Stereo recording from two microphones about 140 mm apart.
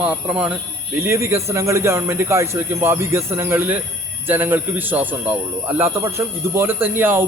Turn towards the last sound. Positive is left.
turn(degrees=-15)  # may be behind; listen again after turning